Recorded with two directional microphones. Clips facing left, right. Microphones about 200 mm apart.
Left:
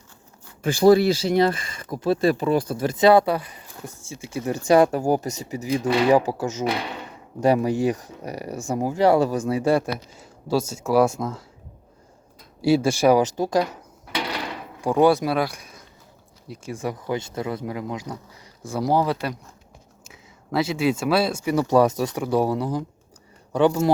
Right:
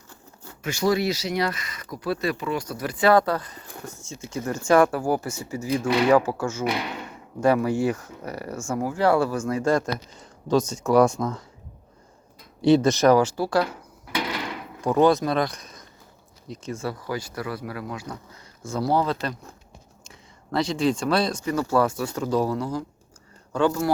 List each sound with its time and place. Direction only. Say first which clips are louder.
0.6 s speech: left 7 dB; 30° left (ahead or behind); by 11.4 s 5° left (ahead or behind)
12.6 s speech: right 1 dB; 10° left (ahead or behind)
14.8 s speech: left 1 dB; 15° left (ahead or behind)